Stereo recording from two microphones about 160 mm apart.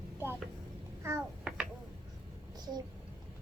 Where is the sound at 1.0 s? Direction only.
15° right (ahead or behind).